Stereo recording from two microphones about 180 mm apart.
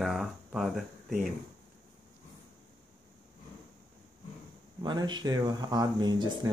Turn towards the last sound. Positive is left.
turn(degrees=-25)  # may be behind; listen again after turning